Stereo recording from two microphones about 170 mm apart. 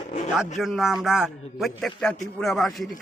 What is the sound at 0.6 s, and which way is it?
A man's voice, centre (ahead or behind).